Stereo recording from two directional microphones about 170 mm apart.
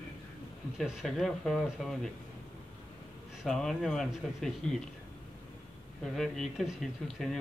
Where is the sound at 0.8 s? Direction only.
Centre (ahead or behind).